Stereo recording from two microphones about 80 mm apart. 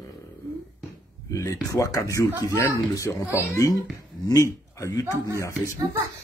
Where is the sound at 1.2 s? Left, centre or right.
Left.